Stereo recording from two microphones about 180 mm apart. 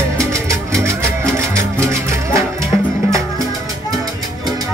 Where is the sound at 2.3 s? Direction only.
15° right (ahead or behind).